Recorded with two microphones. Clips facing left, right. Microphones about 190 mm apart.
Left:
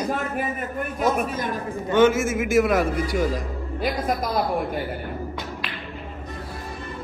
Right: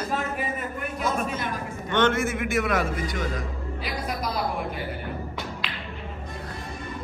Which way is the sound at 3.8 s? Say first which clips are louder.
Left 7 dB; 50° left (ahead or behind).